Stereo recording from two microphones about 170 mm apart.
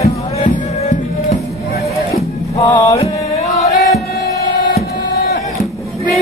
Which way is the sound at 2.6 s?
20° left (ahead or behind).